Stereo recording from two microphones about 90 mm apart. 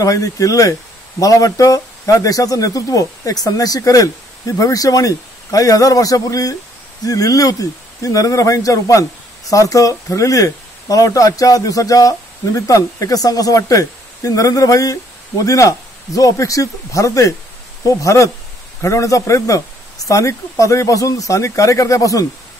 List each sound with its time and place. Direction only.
0.0 s speech: 40° left (ahead or behind)